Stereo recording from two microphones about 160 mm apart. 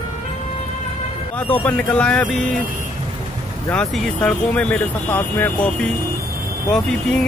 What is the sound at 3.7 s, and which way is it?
Speech, 5° left (ahead or behind).